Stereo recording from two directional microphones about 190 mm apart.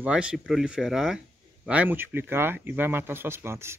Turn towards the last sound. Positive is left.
turn(degrees=-15)  # may be behind; listen again after turning